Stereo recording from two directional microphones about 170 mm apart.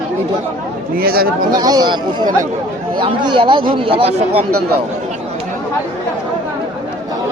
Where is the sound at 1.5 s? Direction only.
25° right (ahead or behind).